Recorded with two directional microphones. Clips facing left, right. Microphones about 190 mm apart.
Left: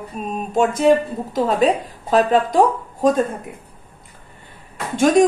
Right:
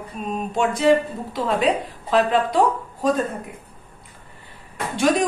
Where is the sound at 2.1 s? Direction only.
40° left (ahead or behind).